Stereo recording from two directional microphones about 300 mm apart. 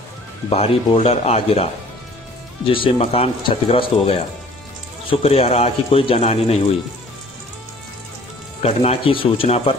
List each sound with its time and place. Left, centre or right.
0.5 s speech: centre
5.2 s speech: centre
8.6 s speech: centre